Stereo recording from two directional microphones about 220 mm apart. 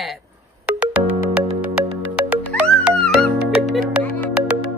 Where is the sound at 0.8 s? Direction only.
5° right (ahead or behind).